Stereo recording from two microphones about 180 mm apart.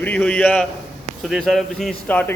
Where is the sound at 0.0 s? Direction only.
10° left (ahead or behind).